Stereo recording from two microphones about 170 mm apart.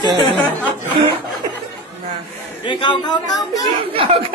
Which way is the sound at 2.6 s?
30° left (ahead or behind).